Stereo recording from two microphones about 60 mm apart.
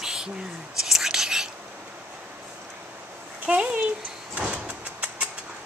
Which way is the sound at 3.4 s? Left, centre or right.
Centre.